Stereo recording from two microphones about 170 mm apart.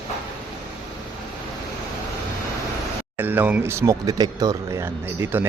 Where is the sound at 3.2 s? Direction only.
10° right (ahead or behind).